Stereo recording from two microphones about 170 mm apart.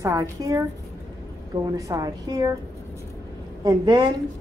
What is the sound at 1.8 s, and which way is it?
Speech, 20° right (ahead or behind).